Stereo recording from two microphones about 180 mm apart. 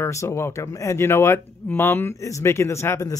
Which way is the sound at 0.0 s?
15° left (ahead or behind).